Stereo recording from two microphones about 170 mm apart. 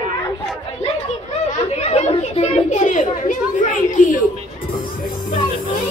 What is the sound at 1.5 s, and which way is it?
Children playing, 40° left (ahead or behind).